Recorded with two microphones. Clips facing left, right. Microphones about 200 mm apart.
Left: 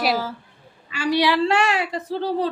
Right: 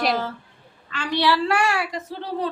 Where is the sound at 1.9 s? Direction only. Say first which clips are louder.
Left 6 dB; 30° left (ahead or behind).